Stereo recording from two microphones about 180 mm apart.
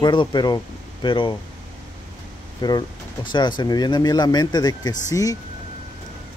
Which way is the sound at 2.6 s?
25° left (ahead or behind).